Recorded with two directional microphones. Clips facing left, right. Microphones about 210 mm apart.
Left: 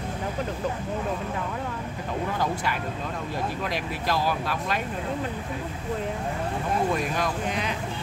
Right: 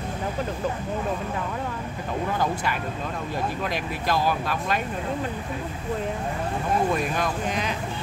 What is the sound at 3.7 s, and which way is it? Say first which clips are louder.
Speech: right 1 dB; 50° right (ahead or behind).